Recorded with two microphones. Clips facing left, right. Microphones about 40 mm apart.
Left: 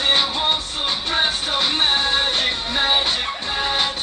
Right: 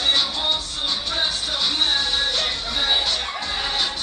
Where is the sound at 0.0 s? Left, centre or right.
Left.